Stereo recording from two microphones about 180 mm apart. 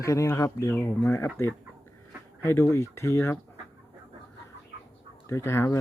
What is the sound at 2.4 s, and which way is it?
Speech, 15° left (ahead or behind).